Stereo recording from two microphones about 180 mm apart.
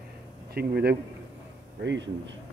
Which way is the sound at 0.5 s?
60° right (ahead or behind).